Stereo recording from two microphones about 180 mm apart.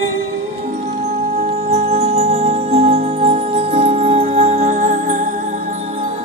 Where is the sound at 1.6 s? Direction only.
35° right (ahead or behind).